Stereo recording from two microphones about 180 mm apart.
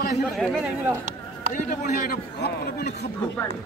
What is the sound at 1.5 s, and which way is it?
A man's voice, 50° left (ahead or behind).